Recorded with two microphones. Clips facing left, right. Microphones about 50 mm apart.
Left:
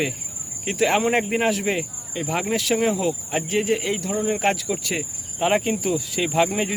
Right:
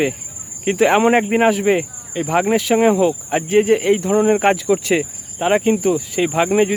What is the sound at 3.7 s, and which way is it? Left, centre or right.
Speech, right.